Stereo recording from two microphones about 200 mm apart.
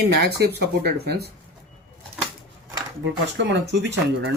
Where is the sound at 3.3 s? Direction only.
60° right (ahead or behind).